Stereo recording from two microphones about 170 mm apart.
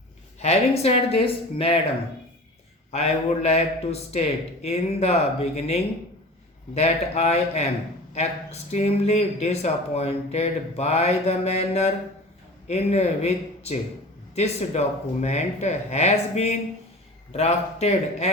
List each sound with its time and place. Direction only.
0.3 s speech: 40° left (ahead or behind)
2.9 s speech: 40° left (ahead or behind)